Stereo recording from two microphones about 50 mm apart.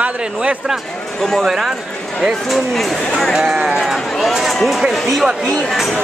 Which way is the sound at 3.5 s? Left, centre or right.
Centre.